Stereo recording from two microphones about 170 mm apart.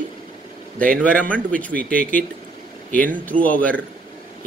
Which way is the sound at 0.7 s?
5° left (ahead or behind).